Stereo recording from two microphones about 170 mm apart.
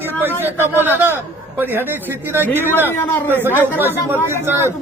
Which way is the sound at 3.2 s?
10° right (ahead or behind).